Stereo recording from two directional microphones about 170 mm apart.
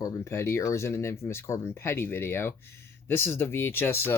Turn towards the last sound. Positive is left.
turn(degrees=15)  # may be behind; listen again after turning